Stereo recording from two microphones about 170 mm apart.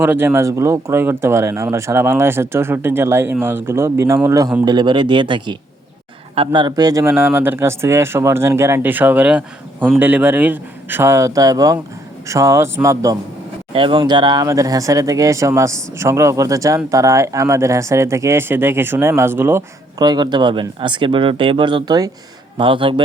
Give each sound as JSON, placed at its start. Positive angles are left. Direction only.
{"t": 0.0, "sound": "speech", "side_deg": -10}
{"t": 13.7, "sound": "speech", "side_deg": -30}